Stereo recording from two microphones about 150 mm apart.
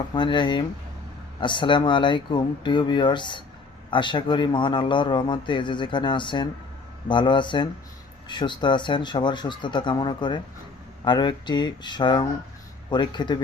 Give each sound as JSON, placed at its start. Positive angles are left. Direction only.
{"t": 0.1, "sound": "a man's voice", "side_deg": 30}